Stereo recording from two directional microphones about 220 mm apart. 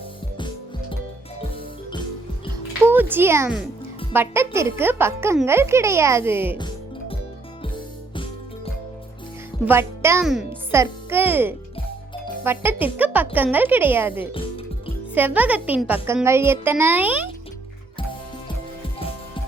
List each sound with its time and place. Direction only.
0.3 s music: 20° left (ahead or behind)
2.8 s a child's voice: 10° right (ahead or behind)
6.6 s music: 20° left (ahead or behind)
9.6 s a child's voice: 10° right (ahead or behind)